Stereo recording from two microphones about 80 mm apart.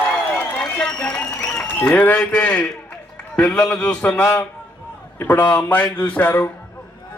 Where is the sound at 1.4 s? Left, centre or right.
Left.